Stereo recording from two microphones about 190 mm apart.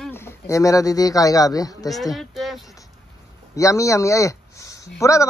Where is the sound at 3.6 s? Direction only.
15° left (ahead or behind).